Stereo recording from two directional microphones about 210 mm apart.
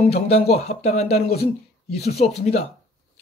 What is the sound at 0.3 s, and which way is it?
Speech, 30° left (ahead or behind).